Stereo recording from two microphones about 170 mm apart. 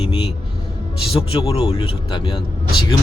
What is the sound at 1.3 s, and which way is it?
Speech, 30° left (ahead or behind).